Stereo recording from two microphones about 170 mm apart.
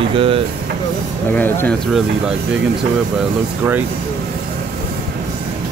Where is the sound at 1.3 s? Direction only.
10° left (ahead or behind).